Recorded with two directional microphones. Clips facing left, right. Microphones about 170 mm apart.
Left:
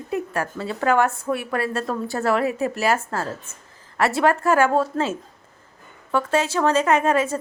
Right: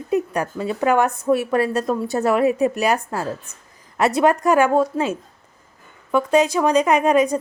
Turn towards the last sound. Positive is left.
turn(degrees=-15)  # may be behind; listen again after turning